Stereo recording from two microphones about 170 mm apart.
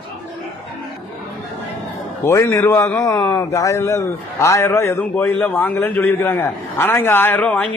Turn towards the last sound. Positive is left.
turn(degrees=10)  # may be behind; listen again after turning